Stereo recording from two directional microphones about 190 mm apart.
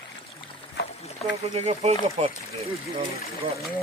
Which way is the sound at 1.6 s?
35° right (ahead or behind).